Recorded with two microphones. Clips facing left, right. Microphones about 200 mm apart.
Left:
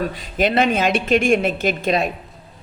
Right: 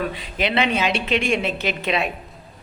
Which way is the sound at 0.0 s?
45° left (ahead or behind).